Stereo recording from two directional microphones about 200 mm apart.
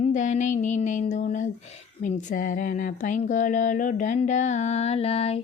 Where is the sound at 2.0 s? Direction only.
40° left (ahead or behind).